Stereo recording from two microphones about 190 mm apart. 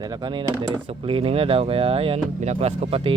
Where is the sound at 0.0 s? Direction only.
20° right (ahead or behind).